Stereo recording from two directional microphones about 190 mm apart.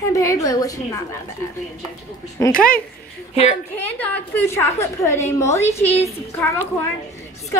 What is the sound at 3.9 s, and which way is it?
A woman's voice, 10° left (ahead or behind).